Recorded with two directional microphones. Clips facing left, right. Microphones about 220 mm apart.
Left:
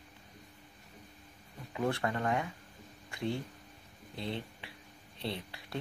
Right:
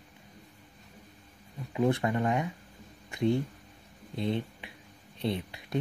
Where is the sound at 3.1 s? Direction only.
20° right (ahead or behind).